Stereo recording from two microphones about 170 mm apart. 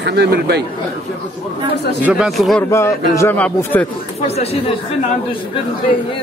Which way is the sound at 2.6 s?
15° left (ahead or behind).